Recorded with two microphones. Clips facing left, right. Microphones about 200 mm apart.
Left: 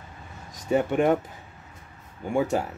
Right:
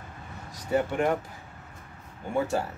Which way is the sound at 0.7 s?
20° left (ahead or behind).